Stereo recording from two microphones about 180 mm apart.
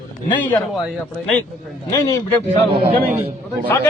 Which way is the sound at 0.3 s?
25° left (ahead or behind).